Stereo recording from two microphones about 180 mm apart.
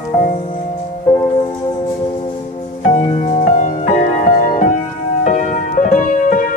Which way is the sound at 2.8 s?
35° left (ahead or behind).